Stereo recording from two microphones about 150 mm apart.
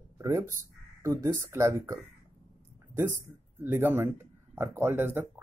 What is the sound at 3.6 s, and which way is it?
Speech, 15° right (ahead or behind).